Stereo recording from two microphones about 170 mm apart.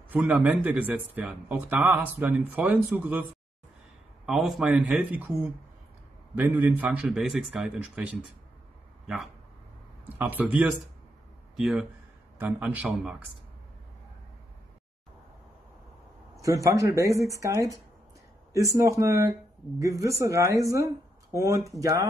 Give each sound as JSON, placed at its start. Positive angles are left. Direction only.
{"t": 0.1, "sound": "speech", "side_deg": -10}
{"t": 4.3, "sound": "a man's voice", "side_deg": 0}
{"t": 16.3, "sound": "speech", "side_deg": -20}